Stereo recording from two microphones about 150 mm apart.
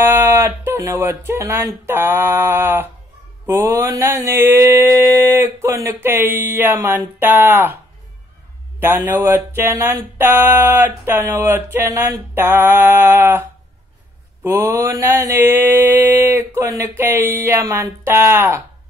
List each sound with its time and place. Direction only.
0.0 s speech: 15° right (ahead or behind)
3.4 s mantra: 15° right (ahead or behind)
8.7 s mantra: 15° right (ahead or behind)